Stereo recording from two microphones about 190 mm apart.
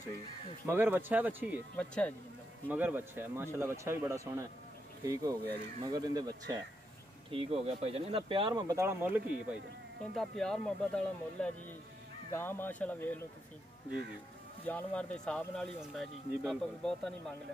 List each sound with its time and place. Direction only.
0.7 s speech: 10° right (ahead or behind)
1.8 s speech: 5° left (ahead or behind)
2.7 s speech: 10° right (ahead or behind)
7.3 s speech: 30° right (ahead or behind); by 9.6 s 10° right (ahead or behind)
10.1 s speech: centre (ahead or behind)
14.6 s speech: 10° left (ahead or behind)